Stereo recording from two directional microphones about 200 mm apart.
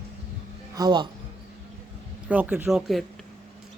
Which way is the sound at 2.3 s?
5° right (ahead or behind).